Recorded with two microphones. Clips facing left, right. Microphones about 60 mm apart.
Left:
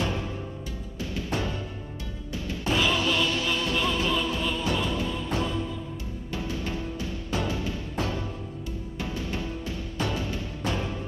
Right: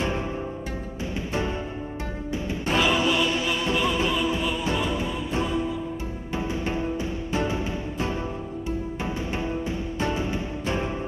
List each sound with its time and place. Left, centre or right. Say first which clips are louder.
1.1 s music: right 2 dB; right
2.8 s music: right 3 dB; centre